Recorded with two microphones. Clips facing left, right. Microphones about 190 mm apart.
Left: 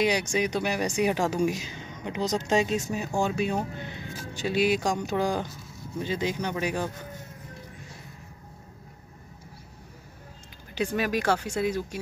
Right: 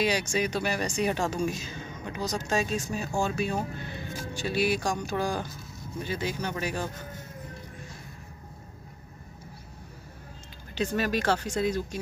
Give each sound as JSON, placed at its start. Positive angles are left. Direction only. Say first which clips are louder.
{"t": 0.0, "sound": "speech", "louder": "left 2 dB", "side_deg": 15}
{"t": 10.7, "sound": "speech", "louder": "left 1 dB", "side_deg": 15}